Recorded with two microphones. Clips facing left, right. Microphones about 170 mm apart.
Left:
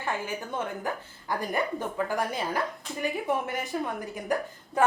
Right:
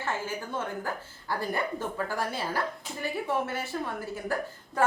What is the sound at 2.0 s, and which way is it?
Speech, 15° left (ahead or behind).